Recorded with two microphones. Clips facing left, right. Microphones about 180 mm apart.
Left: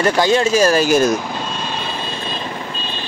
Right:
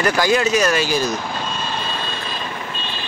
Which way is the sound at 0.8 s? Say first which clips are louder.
Left 6 dB; 50° left (ahead or behind).